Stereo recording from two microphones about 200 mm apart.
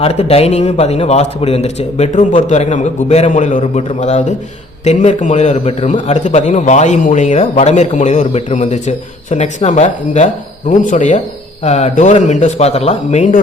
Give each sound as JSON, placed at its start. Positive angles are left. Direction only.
{"t": 0.0, "sound": "a man's voice", "side_deg": 30}